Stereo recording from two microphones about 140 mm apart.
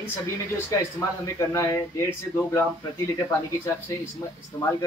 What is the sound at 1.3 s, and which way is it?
Speech, 20° left (ahead or behind).